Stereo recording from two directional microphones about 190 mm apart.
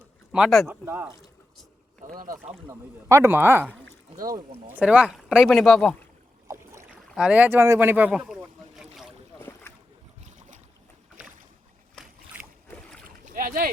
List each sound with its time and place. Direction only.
0.3 s speech: centre (ahead or behind)
0.9 s speech: 10° right (ahead or behind)
2.0 s speech: 45° right (ahead or behind)
2.4 s speech: 10° right (ahead or behind)
4.7 s speech: 5° right (ahead or behind)
6.5 s boat: 15° right (ahead or behind)
7.1 s boat: 5° right (ahead or behind)
9.4 s boat: 10° left (ahead or behind)
10.2 s boat: 40° right (ahead or behind)
12.0 s boat: 5° left (ahead or behind)
12.4 s boat: 10° right (ahead or behind)
13.1 s boat: 45° right (ahead or behind)